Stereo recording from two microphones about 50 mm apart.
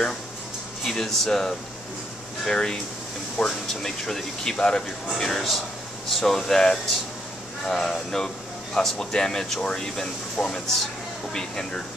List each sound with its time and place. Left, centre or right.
0.8 s speech: centre